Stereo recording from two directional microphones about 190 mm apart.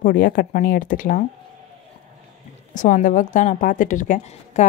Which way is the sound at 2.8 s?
40° left (ahead or behind).